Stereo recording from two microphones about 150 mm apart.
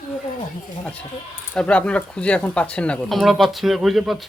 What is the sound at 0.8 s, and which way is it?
Speech, 10° left (ahead or behind).